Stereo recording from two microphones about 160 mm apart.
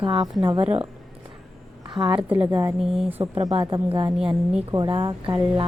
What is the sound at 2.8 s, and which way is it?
Speech, centre (ahead or behind).